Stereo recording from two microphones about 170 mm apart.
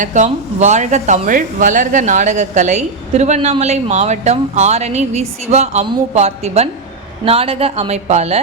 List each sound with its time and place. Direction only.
0.0 s a woman's voice: 45° right (ahead or behind)